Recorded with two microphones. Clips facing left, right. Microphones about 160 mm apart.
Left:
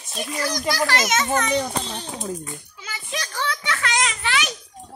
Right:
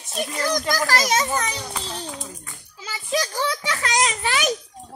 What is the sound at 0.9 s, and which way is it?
Speech, 35° right (ahead or behind).